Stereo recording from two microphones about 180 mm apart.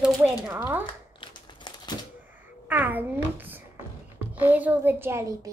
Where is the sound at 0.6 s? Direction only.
10° right (ahead or behind).